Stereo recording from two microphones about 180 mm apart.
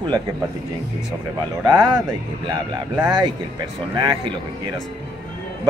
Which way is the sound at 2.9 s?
20° right (ahead or behind).